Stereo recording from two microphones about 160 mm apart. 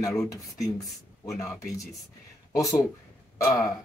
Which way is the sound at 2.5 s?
20° left (ahead or behind).